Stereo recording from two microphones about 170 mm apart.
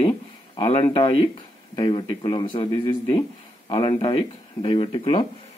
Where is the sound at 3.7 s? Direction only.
30° left (ahead or behind).